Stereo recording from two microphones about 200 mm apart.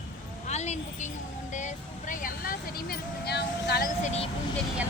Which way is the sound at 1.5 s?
40° left (ahead or behind).